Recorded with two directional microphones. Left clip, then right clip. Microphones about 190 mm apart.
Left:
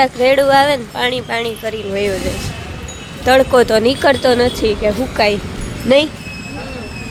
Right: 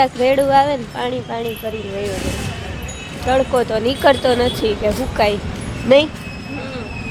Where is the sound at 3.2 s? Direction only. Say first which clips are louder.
Left 6 dB; 35° left (ahead or behind).